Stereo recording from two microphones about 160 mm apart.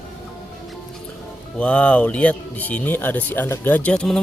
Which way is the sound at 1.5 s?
10° left (ahead or behind).